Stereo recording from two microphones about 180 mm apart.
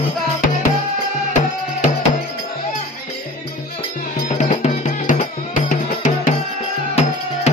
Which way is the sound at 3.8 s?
40° left (ahead or behind).